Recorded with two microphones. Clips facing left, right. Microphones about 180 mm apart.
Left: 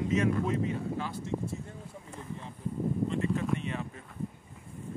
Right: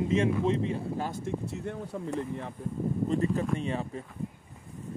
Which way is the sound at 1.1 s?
60° right (ahead or behind).